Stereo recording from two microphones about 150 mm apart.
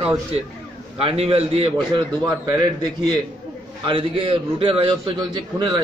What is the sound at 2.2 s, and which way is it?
A man's voice, 30° right (ahead or behind).